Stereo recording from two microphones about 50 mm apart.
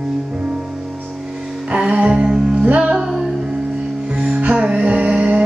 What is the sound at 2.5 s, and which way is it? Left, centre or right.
Music, right.